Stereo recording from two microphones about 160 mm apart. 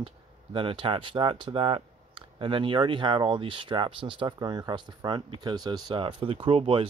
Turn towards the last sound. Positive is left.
turn(degrees=-35)  # may be behind; listen again after turning